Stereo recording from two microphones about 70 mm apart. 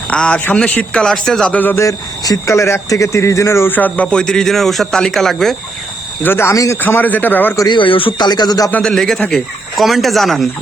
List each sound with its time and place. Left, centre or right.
0.1 s speech: centre
1.5 s a man's voice: left
1.7 s speech: left
3.7 s speech: left; by 5.5 s centre
6.2 s speech: left
6.8 s a man's voice: left
8.2 s speech: left
8.8 s speech: centre